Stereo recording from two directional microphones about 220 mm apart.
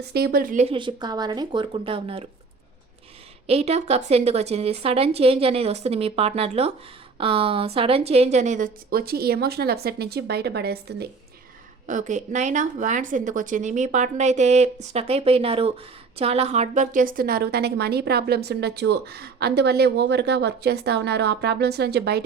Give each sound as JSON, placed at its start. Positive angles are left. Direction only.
{"t": 0.1, "sound": "a woman's voice", "side_deg": -45}
{"t": 3.4, "sound": "a woman's voice", "side_deg": -30}
{"t": 11.9, "sound": "a woman's voice", "side_deg": -35}